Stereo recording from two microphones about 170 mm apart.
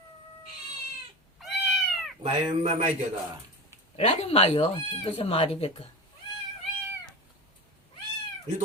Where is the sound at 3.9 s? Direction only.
40° left (ahead or behind).